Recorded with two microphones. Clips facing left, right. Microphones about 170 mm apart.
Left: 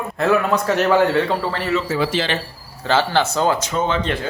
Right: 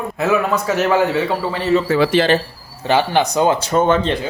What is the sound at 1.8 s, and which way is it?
Speech, 70° right (ahead or behind).